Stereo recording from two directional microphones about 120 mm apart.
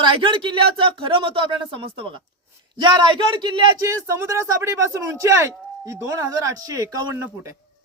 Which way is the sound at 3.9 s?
25° right (ahead or behind).